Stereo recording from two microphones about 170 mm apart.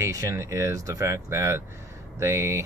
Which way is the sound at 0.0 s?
20° right (ahead or behind).